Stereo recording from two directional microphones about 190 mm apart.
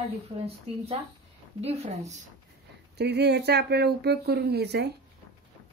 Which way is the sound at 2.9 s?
60° right (ahead or behind).